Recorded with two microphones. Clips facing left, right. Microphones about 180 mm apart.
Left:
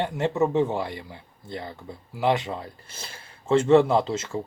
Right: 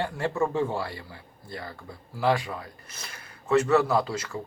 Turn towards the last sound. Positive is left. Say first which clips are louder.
# left 3 dB
turn(degrees=25)  # may be behind; listen again after turning